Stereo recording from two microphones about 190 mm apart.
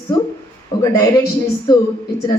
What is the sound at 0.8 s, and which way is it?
Speech, 15° left (ahead or behind).